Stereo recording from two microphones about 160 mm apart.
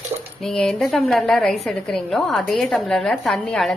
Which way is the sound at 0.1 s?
25° right (ahead or behind).